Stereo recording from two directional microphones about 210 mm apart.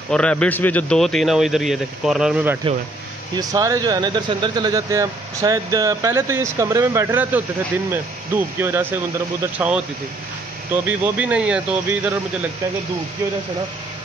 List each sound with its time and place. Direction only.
0.1 s a man's voice: 5° left (ahead or behind)
10.9 s speech: 5° right (ahead or behind)